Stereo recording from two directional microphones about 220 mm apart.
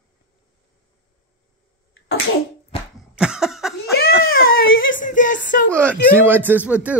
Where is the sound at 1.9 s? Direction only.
55° left (ahead or behind).